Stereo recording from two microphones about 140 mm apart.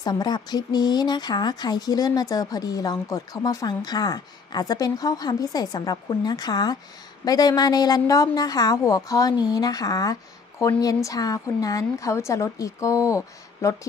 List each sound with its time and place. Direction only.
0.0 s speech: 30° left (ahead or behind)